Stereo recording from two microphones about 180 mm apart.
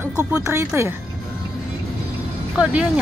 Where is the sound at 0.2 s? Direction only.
15° right (ahead or behind).